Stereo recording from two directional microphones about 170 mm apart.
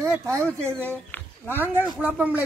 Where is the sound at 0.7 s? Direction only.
10° left (ahead or behind).